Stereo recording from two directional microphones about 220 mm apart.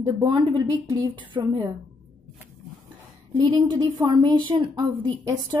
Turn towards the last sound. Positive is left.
turn(degrees=-15)  # may be behind; listen again after turning